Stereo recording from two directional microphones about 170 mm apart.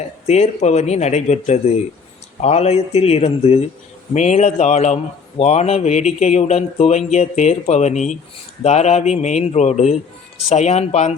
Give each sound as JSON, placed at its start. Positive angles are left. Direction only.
{"t": 0.3, "sound": "a man's voice", "side_deg": 40}